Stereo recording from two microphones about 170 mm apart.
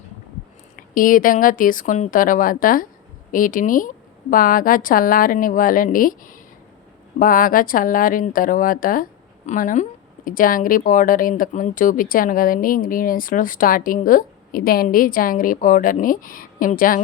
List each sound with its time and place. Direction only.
0.8 s speech: 55° left (ahead or behind)